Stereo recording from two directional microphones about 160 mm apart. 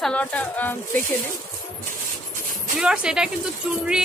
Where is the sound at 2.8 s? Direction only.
5° right (ahead or behind).